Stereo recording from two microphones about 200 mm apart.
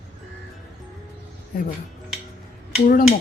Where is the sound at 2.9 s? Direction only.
45° left (ahead or behind).